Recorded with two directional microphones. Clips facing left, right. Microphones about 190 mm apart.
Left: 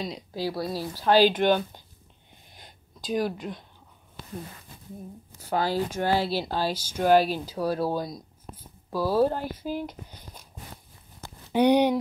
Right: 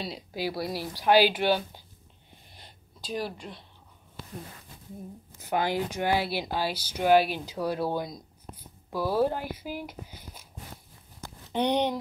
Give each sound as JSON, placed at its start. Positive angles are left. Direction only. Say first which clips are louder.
{"t": 0.0, "sound": "speech", "louder": "left 3 dB", "side_deg": -5}
{"t": 0.4, "sound": "speech", "louder": "left 2 dB", "side_deg": -15}
{"t": 2.6, "sound": "a sound", "louder": "left 6 dB", "side_deg": 0}
{"t": 5.4, "sound": "speech", "louder": "left 2 dB", "side_deg": -20}
{"t": 7.1, "sound": "speech", "louder": "left 1 dB", "side_deg": 40}
{"t": 7.9, "sound": "speech", "louder": "left 2 dB", "side_deg": -20}
{"t": 11.5, "sound": "speech", "louder": "left 6 dB", "side_deg": 10}